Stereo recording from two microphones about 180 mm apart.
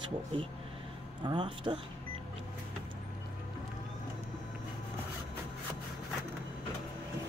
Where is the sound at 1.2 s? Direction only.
25° right (ahead or behind).